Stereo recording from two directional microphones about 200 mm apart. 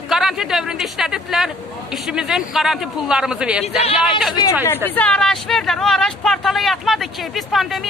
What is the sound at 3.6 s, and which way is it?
Speech, 30° left (ahead or behind).